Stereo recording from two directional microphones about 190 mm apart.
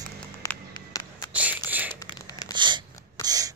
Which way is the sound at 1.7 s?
10° right (ahead or behind).